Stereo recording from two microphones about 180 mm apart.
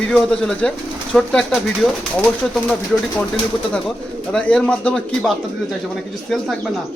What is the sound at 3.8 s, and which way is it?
Speech, 5° left (ahead or behind).